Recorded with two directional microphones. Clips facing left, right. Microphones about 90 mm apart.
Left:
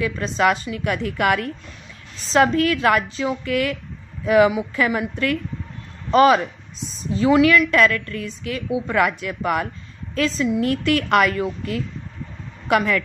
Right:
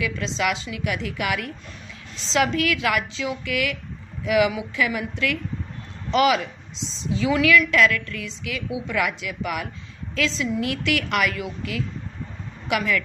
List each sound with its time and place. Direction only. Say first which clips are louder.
0.0 s a woman's voice: left 5 dB; 45° left (ahead or behind)
2.3 s a woman's voice: left 5 dB; 40° left (ahead or behind)